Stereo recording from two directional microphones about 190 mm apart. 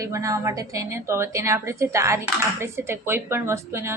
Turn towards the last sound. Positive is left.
turn(degrees=-15)  # may be behind; listen again after turning